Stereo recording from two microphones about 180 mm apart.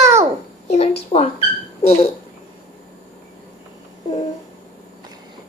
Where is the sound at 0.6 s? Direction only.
35° left (ahead or behind).